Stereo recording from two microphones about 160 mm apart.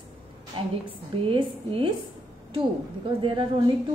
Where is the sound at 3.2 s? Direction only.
30° right (ahead or behind).